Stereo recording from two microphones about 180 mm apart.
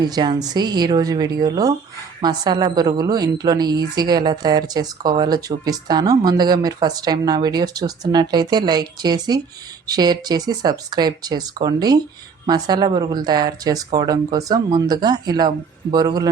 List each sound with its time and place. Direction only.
0.0 s a woman's voice: 25° right (ahead or behind)